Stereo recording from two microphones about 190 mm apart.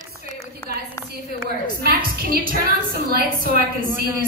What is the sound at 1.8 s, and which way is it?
A woman's voice, 50° right (ahead or behind).